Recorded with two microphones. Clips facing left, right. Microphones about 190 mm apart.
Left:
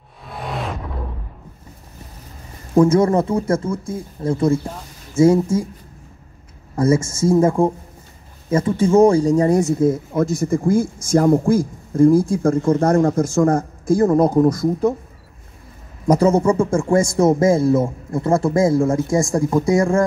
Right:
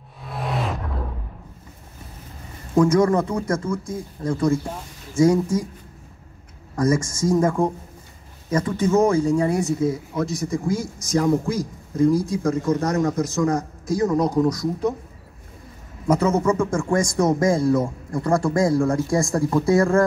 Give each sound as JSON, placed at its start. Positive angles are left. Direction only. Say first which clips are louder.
{"t": 0.3, "sound": "music", "louder": "even", "side_deg": 0}
{"t": 2.7, "sound": "speech", "louder": "left 3 dB", "side_deg": 25}
{"t": 6.7, "sound": "speech", "louder": "left 4 dB", "side_deg": 25}
{"t": 16.1, "sound": "speech", "louder": "left 4 dB", "side_deg": 35}